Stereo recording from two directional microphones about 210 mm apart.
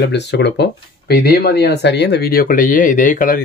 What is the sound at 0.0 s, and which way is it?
Speech, 55° left (ahead or behind).